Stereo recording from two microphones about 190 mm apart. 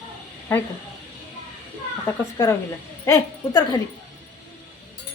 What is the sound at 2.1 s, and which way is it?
Speech, 15° left (ahead or behind).